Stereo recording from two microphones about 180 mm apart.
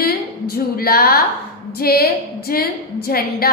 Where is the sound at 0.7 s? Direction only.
55° left (ahead or behind).